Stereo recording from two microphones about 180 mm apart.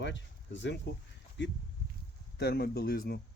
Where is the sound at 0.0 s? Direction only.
85° left.